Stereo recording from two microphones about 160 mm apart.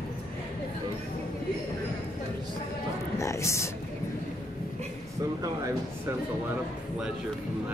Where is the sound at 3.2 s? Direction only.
20° left (ahead or behind).